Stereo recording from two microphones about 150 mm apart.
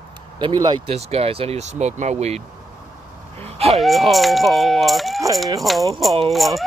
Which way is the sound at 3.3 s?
45° right (ahead or behind).